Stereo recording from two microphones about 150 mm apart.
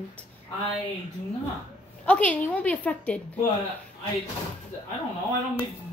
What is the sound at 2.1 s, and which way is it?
A woman's voice, 10° left (ahead or behind).